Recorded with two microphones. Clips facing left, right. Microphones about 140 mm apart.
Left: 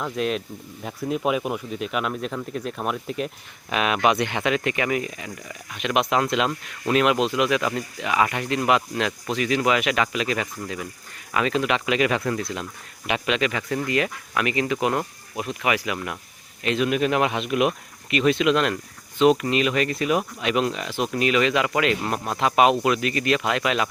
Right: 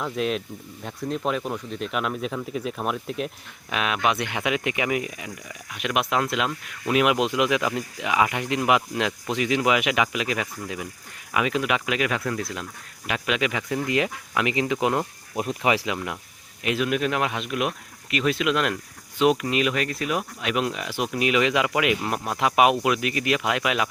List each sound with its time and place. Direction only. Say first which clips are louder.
0.0 s speech: left 1 dB; centre (ahead or behind); by 16.0 s 25° right (ahead or behind)
16.6 s speech: left 2 dB; 5° right (ahead or behind)